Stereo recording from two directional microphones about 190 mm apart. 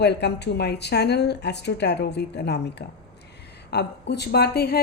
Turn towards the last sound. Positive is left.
turn(degrees=55)  # may be behind; listen again after turning